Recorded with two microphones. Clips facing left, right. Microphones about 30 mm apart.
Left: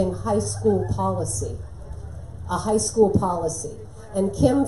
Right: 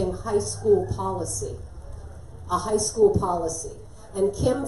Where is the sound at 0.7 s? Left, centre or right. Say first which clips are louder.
Right 4 dB; centre.